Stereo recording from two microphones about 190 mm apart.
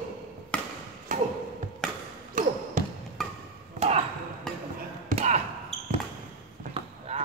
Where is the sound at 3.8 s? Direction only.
35° right (ahead or behind).